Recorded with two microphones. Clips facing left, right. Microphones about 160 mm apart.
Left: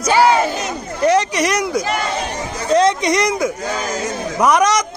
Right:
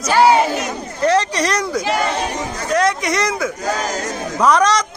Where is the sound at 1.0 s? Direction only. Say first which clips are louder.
Left 1 dB; 15° left (ahead or behind).